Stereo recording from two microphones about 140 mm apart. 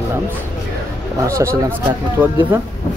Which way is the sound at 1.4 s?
20° right (ahead or behind).